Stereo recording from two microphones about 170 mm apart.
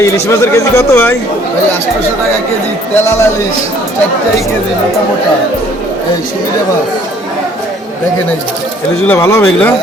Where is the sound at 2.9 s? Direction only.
15° left (ahead or behind).